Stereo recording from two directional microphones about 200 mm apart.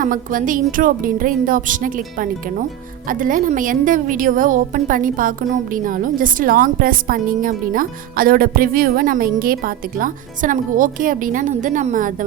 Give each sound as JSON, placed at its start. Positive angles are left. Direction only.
{"t": 0.0, "sound": "a woman's voice", "side_deg": -40}